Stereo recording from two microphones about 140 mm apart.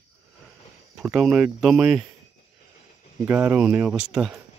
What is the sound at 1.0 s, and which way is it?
Speech, 5° right (ahead or behind).